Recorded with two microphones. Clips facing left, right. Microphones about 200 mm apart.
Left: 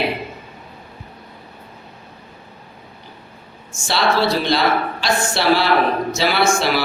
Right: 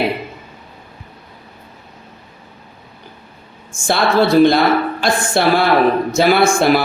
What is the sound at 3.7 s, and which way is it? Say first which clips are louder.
A woman's voice: right 3 dB; 50° right (ahead or behind).